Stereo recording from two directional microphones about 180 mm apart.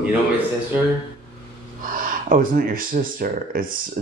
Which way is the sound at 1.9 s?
50° right (ahead or behind).